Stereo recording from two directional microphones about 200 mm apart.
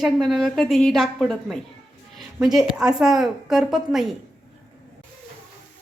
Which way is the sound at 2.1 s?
Centre (ahead or behind).